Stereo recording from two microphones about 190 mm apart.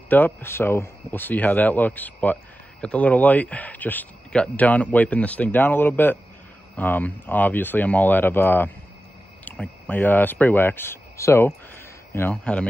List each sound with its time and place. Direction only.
0.1 s speech: 10° left (ahead or behind)